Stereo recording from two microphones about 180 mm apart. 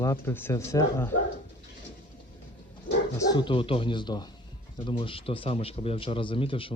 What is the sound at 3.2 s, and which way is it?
A man's voice, 25° left (ahead or behind).